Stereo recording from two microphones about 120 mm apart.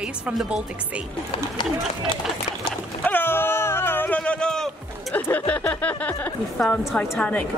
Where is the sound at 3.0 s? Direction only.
15° left (ahead or behind).